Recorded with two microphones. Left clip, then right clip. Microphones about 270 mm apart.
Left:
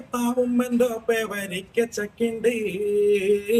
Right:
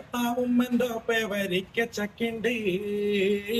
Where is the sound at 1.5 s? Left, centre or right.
Centre.